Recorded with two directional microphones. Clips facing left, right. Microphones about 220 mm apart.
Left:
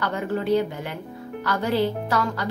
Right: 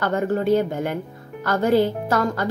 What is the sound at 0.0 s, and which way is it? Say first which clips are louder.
A woman's voice: right 5 dB; 45° right (ahead or behind).